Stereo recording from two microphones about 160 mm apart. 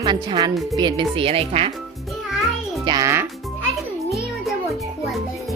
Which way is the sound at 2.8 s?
20° right (ahead or behind).